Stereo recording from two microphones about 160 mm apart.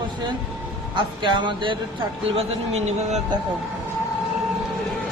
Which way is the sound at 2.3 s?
45° right (ahead or behind).